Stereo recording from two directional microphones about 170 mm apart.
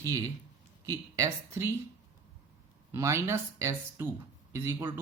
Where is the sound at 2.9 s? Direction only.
15° right (ahead or behind).